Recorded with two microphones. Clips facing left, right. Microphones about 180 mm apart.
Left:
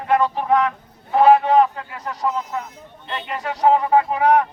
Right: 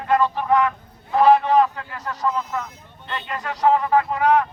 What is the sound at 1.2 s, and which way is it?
Speech, 20° left (ahead or behind).